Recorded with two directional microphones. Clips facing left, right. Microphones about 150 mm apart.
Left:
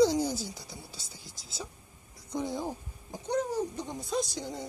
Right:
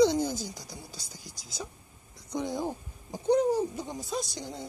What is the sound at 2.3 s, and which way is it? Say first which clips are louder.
Speech: right 2 dB; 5° left (ahead or behind).